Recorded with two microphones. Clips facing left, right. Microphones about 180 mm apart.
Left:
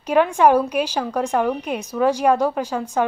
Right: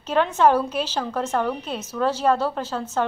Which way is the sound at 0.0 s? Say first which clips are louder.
Left 3 dB; 10° left (ahead or behind).